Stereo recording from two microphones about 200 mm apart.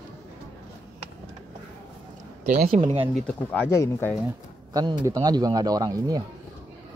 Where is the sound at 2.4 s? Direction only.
40° right (ahead or behind).